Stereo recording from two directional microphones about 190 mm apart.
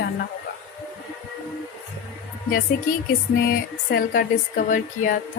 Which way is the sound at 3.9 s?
50° left (ahead or behind).